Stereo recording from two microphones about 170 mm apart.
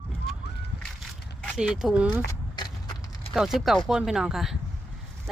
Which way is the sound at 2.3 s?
25° left (ahead or behind).